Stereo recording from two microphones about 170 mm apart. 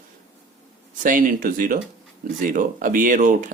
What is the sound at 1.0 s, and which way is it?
Speech, 50° right (ahead or behind).